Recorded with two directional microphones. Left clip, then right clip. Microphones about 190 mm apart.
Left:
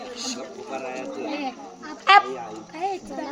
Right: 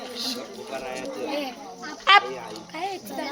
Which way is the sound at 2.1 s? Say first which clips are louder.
Left 2 dB; 15° left (ahead or behind).